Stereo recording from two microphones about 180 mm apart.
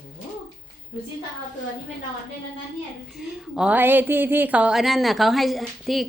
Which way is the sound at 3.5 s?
5° right (ahead or behind).